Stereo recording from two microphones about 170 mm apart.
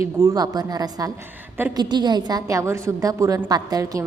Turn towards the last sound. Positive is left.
turn(degrees=-20)  # may be behind; listen again after turning